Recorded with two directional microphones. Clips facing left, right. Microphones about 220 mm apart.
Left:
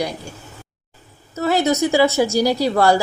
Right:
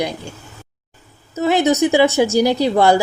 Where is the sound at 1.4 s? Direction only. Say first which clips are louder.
Right 3 dB; 20° right (ahead or behind).